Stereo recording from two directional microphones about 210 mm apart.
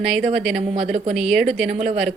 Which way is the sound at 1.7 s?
35° right (ahead or behind).